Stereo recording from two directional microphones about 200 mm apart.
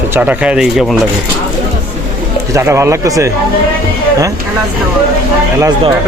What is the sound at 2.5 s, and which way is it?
Speech, 15° right (ahead or behind).